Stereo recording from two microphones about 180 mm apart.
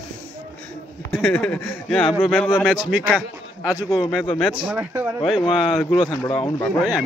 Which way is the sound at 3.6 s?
5° right (ahead or behind).